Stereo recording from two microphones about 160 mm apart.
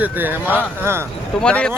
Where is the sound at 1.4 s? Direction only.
5° left (ahead or behind).